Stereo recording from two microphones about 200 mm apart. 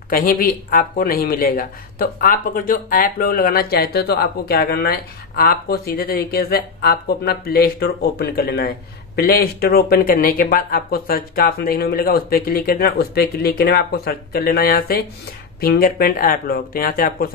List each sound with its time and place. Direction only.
0.1 s speech: 45° left (ahead or behind)